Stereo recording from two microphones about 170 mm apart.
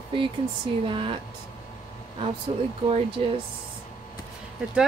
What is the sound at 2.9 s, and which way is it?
Speech, 35° right (ahead or behind).